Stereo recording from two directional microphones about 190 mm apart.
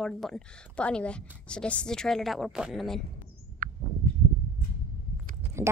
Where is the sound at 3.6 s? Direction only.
45° right (ahead or behind).